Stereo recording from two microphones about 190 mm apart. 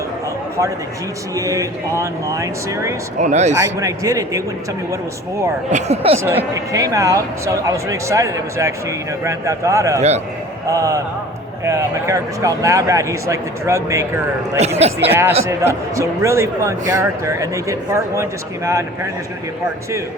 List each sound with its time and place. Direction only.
1.4 s speech: 15° right (ahead or behind)
3.2 s speech: 40° right (ahead or behind)
3.6 s speech: 15° right (ahead or behind)
5.7 s speech: 30° right (ahead or behind)
6.1 s speech: 15° right (ahead or behind)